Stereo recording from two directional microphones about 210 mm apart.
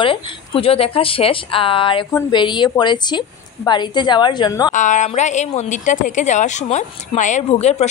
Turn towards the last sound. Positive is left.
turn(degrees=30)  # may be behind; listen again after turning